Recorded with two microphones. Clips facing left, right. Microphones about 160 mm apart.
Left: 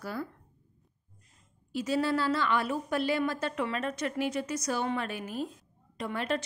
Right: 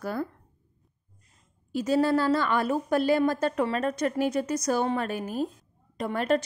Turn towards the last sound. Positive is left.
turn(degrees=-45)  # may be behind; listen again after turning